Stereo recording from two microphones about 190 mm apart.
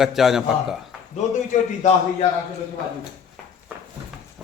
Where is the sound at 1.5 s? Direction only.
40° left (ahead or behind).